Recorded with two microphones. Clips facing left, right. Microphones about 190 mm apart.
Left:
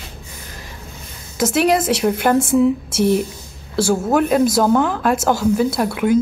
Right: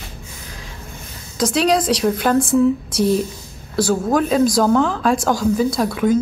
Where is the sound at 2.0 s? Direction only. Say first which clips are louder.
Left 2 dB; 10° left (ahead or behind).